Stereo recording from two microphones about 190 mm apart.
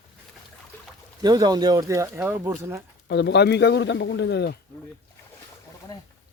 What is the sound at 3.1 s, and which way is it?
Speech, 65° left (ahead or behind).